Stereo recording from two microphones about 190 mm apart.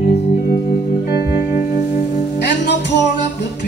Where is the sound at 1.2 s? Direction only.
15° right (ahead or behind).